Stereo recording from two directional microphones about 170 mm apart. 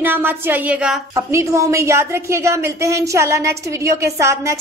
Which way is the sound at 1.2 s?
15° right (ahead or behind).